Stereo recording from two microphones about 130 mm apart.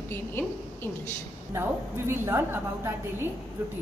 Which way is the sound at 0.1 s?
15° left (ahead or behind).